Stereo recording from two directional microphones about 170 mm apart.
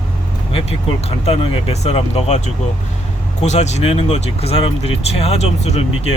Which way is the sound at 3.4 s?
40° left (ahead or behind).